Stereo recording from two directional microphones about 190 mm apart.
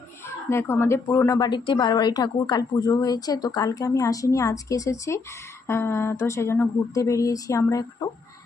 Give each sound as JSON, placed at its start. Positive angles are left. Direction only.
{"t": 0.5, "sound": "speech", "side_deg": 15}